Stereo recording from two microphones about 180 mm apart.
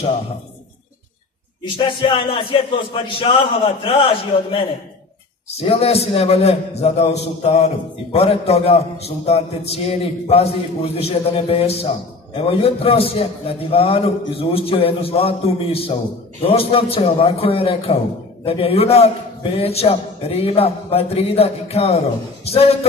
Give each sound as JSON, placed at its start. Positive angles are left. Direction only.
{"t": 1.6, "sound": "a man's voice", "side_deg": 30}